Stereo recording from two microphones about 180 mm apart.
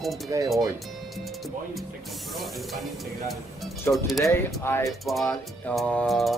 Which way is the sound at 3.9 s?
10° left (ahead or behind).